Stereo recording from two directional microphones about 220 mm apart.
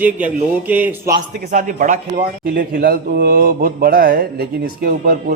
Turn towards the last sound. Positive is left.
turn(degrees=-45)  # may be behind; listen again after turning